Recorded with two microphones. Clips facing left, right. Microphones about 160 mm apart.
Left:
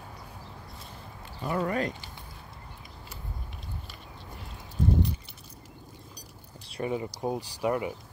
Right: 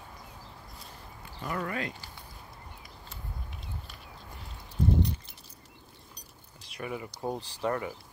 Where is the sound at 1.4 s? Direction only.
25° left (ahead or behind).